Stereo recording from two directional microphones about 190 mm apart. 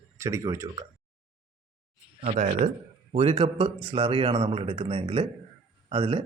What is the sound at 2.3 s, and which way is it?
A man's voice, 40° right (ahead or behind).